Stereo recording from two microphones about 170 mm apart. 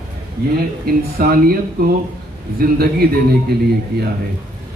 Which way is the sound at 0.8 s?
60° right (ahead or behind).